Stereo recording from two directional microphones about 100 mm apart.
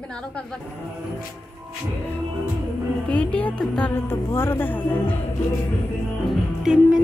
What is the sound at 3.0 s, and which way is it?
Speech, 10° left (ahead or behind).